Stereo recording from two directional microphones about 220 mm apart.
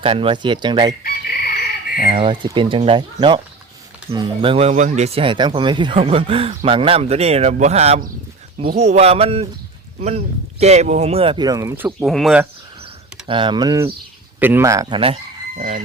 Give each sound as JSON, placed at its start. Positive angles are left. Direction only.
{"t": 0.0, "sound": "speech", "side_deg": -25}
{"t": 1.0, "sound": "chicken", "side_deg": 45}
{"t": 2.0, "sound": "speech", "side_deg": -25}
{"t": 10.6, "sound": "speech", "side_deg": -30}
{"t": 11.9, "sound": "speech", "side_deg": 0}
{"t": 13.2, "sound": "speech", "side_deg": -20}
{"t": 15.5, "sound": "chicken", "side_deg": -35}